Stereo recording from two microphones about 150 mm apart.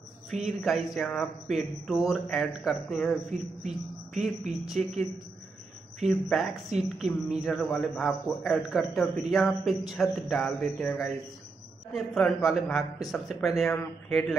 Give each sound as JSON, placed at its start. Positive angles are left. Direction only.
{"t": 0.3, "sound": "speech", "side_deg": 0}
{"t": 11.9, "sound": "speech", "side_deg": 5}